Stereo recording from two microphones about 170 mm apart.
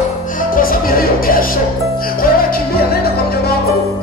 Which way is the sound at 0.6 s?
60° left (ahead or behind).